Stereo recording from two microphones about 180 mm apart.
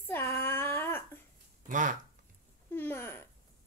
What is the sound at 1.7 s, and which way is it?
Speech, 45° right (ahead or behind).